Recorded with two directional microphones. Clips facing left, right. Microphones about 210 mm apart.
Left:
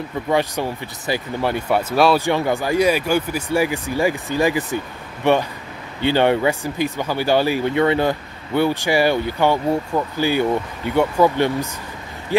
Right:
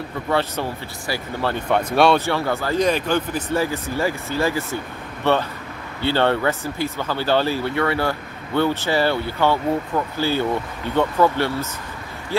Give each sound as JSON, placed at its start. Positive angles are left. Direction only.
{"t": 0.3, "sound": "speech", "side_deg": 15}
{"t": 2.2, "sound": "speech", "side_deg": 15}